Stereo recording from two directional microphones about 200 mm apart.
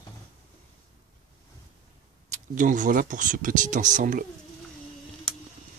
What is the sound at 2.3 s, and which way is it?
Speech, 40° right (ahead or behind).